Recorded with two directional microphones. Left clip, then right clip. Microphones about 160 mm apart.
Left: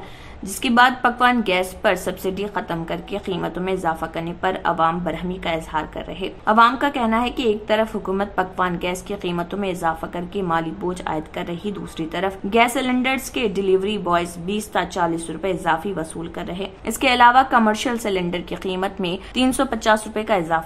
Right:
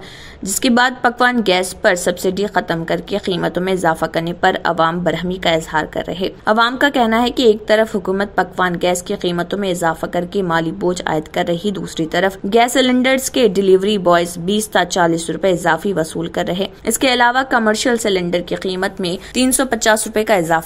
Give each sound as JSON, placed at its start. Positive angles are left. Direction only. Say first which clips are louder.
{"t": 0.6, "sound": "a woman's voice", "louder": "right 1 dB", "side_deg": -30}
{"t": 16.8, "sound": "a woman's voice", "louder": "even", "side_deg": -25}